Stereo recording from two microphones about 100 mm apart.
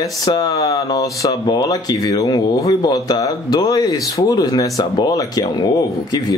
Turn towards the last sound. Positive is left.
turn(degrees=40)  # may be behind; listen again after turning